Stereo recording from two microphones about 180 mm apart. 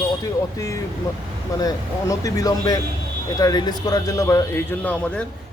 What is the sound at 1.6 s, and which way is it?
Speech, 20° left (ahead or behind).